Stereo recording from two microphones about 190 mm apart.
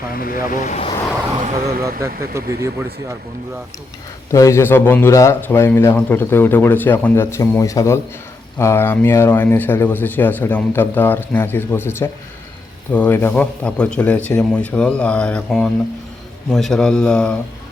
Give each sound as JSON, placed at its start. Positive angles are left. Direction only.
{"t": 0.1, "sound": "speech", "side_deg": 50}
{"t": 2.0, "sound": "speech", "side_deg": -15}
{"t": 4.3, "sound": "speech", "side_deg": 15}